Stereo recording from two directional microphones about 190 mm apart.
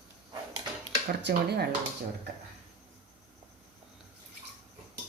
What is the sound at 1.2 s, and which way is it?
Speech, 60° right (ahead or behind).